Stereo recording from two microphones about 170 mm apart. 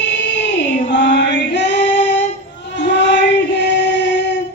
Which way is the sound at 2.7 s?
90° left.